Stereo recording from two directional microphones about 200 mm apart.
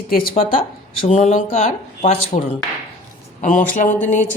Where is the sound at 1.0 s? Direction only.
35° left (ahead or behind).